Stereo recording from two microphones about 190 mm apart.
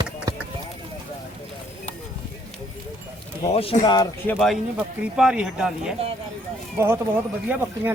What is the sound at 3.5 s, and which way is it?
Speech, 30° left (ahead or behind).